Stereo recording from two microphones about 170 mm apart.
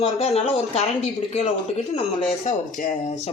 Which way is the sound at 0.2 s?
40° left (ahead or behind).